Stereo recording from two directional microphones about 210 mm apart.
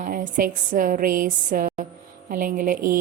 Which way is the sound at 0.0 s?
40° right (ahead or behind).